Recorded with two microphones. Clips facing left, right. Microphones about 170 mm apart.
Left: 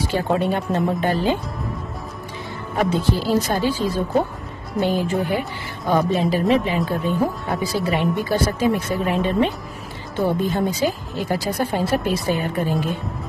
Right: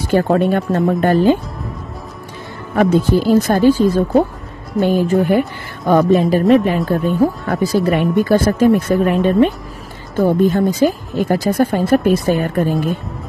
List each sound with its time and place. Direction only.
0.0 s speech: 50° right (ahead or behind)
2.7 s speech: 50° right (ahead or behind)